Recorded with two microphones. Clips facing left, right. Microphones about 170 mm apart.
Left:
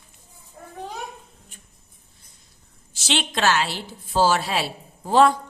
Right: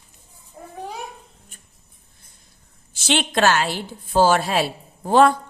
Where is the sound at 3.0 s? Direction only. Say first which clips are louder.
Right 4 dB; 50° right (ahead or behind).